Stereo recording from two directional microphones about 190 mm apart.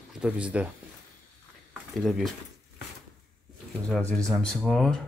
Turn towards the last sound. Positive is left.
turn(degrees=5)  # may be behind; listen again after turning